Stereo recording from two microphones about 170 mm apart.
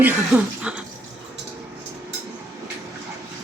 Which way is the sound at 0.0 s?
10° right (ahead or behind).